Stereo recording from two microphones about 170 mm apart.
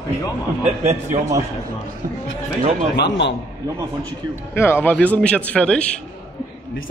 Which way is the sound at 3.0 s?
90° left.